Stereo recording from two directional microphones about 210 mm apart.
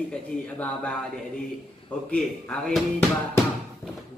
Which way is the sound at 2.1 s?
5° left (ahead or behind).